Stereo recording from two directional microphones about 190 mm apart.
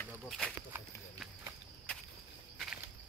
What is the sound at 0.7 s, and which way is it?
Clip-clop, 10° right (ahead or behind).